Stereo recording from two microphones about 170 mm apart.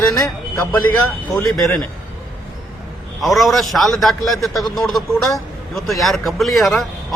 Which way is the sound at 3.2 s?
Centre (ahead or behind).